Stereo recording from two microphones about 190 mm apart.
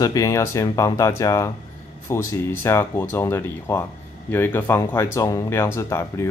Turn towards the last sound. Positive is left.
turn(degrees=15)  # may be behind; listen again after turning